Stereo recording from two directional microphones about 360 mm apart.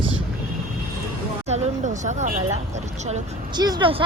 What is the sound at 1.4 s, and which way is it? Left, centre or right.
Speech, centre.